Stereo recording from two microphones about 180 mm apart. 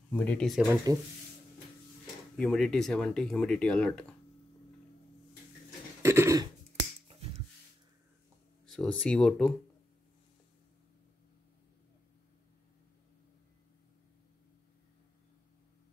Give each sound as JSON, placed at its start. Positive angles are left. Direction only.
{"t": 0.1, "sound": "speech", "side_deg": 10}
{"t": 0.9, "sound": "speech", "side_deg": -20}
{"t": 2.3, "sound": "speech", "side_deg": 5}
{"t": 6.0, "sound": "cough", "side_deg": -15}
{"t": 8.6, "sound": "speech", "side_deg": 5}